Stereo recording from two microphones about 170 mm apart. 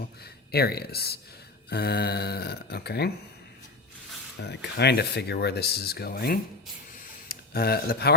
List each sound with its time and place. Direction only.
0.2 s speech: 70° left (ahead or behind)
4.4 s speech: 80° left